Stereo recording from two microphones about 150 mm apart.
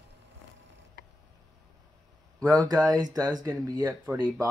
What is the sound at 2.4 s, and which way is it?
Speech, 25° right (ahead or behind).